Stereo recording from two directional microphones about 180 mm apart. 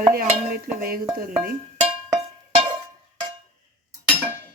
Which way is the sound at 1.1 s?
55° right (ahead or behind).